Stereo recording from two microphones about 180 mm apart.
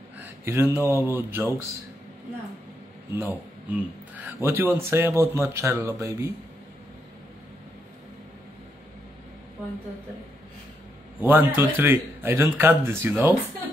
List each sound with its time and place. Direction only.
0.5 s speech: 10° right (ahead or behind)
3.2 s speech: 10° right (ahead or behind)
11.1 s speech: 10° right (ahead or behind)